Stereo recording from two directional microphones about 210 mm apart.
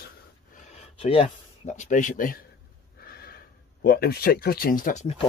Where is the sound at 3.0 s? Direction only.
45° left (ahead or behind).